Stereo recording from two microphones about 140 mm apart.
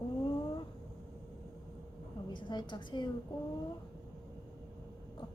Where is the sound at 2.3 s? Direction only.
35° left (ahead or behind).